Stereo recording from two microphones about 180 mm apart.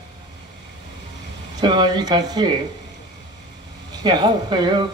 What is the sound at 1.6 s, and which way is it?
Speech, 25° right (ahead or behind).